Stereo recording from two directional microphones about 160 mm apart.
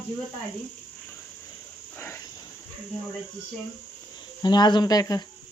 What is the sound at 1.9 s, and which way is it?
Speech, 15° left (ahead or behind).